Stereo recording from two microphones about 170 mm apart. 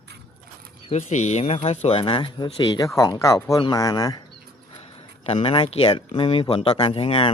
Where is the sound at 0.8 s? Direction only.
40° left (ahead or behind); by 4.2 s 20° left (ahead or behind).